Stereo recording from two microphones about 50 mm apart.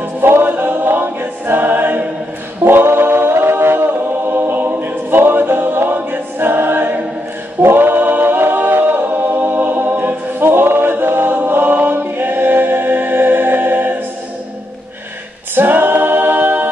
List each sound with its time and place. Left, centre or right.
0.0 s choir: right
2.6 s a capella: right
15.5 s a capella: right